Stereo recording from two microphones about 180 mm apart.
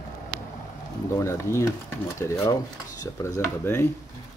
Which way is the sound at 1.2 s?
15° left (ahead or behind).